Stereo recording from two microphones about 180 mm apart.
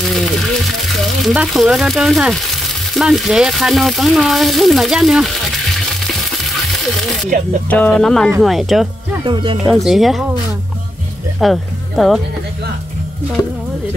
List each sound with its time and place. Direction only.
0.1 s a sound: centre (ahead or behind)
1.2 s speech: centre (ahead or behind)
6.8 s speech: centre (ahead or behind)
9.2 s speech: 25° right (ahead or behind)
9.7 s speech: centre (ahead or behind)
11.3 s speech: centre (ahead or behind)